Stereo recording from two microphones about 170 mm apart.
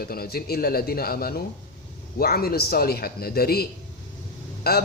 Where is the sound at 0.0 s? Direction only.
65° left (ahead or behind).